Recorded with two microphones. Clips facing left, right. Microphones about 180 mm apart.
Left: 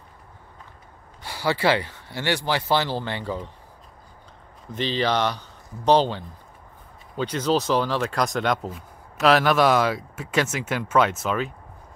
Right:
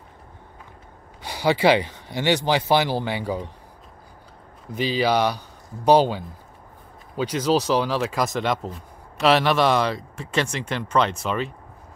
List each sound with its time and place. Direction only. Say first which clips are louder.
1.2 s speech: right 4 dB; 15° right (ahead or behind)
4.7 s speech: right 2 dB; 10° right (ahead or behind)